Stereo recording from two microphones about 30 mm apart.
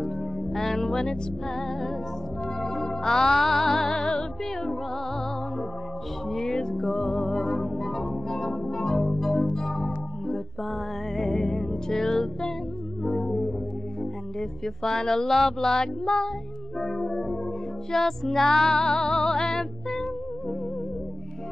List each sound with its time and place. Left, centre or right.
0.0 s music: centre
0.9 s speech: centre
2.4 s music: centre
3.3 s music: centre
6.2 s music: centre
7.0 s music: centre
14.6 s speech: centre
15.8 s music: left
16.8 s music: centre
17.9 s speech: centre
18.8 s music: centre